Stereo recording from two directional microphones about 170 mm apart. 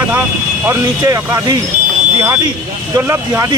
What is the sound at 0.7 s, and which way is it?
Speech, 15° right (ahead or behind).